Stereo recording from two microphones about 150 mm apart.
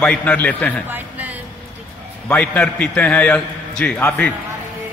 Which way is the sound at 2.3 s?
10° left (ahead or behind).